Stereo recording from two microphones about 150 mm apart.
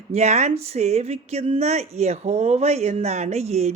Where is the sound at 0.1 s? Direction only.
50° right (ahead or behind).